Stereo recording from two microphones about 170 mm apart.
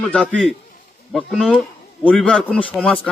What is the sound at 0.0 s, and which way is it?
A man's voice, 5° left (ahead or behind).